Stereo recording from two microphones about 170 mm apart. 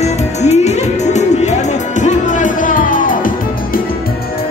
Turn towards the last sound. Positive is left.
turn(degrees=55)  # may be behind; listen again after turning